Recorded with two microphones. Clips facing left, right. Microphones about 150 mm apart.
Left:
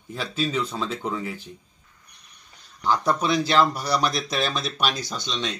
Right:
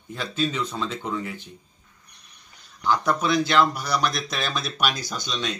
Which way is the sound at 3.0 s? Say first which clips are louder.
Even; 30° left (ahead or behind).